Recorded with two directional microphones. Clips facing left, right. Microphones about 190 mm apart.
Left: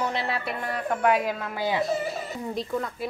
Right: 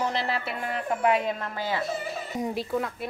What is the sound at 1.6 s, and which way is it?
Speech, 15° left (ahead or behind).